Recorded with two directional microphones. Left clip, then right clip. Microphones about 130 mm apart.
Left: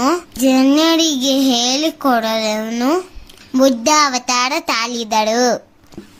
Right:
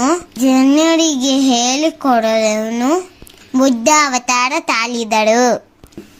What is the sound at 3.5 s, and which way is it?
A child's voice, 15° right (ahead or behind).